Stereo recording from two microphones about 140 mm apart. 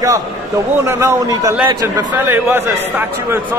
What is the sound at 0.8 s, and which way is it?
A man's voice, 20° right (ahead or behind).